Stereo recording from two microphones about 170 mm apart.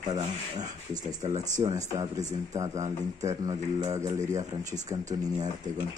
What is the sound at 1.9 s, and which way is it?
Speech, 20° right (ahead or behind).